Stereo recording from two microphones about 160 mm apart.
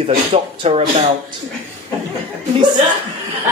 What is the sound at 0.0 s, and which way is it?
Speech, 50° right (ahead or behind).